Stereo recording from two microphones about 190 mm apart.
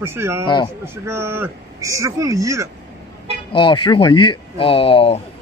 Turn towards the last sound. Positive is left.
turn(degrees=30)  # may be behind; listen again after turning